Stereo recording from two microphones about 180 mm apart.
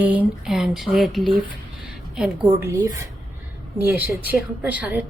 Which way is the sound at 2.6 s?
20° right (ahead or behind).